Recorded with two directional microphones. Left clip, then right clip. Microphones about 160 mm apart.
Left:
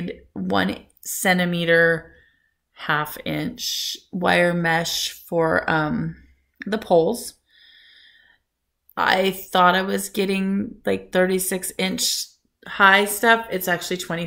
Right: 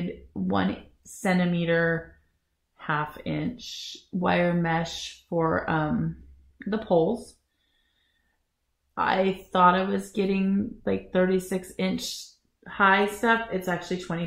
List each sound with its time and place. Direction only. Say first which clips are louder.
0.1 s a sound: left 7 dB; 20° left (ahead or behind)
1.2 s speech: left 6 dB; 15° left (ahead or behind)
8.9 s speech: left 5 dB; 15° left (ahead or behind)